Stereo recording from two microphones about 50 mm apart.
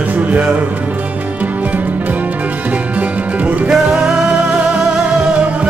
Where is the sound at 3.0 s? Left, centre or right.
Right.